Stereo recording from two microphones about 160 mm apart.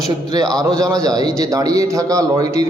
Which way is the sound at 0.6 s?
20° right (ahead or behind).